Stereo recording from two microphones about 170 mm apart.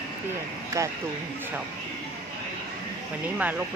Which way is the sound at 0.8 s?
20° right (ahead or behind).